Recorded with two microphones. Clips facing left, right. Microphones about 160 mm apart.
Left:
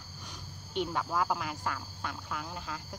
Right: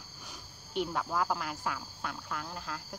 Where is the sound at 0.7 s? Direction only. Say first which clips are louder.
Even; centre (ahead or behind).